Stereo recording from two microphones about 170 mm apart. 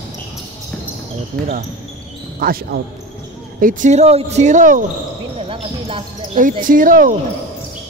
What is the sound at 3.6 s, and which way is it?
Speech, 50° right (ahead or behind).